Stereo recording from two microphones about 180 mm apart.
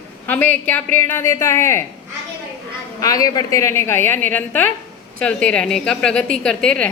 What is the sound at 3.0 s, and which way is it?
A woman's voice, 20° left (ahead or behind).